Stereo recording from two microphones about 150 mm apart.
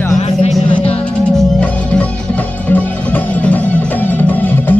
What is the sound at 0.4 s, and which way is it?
Music, 50° left (ahead or behind).